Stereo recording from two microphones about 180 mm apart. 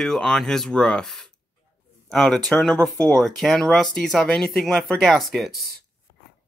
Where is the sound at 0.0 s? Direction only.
Centre (ahead or behind).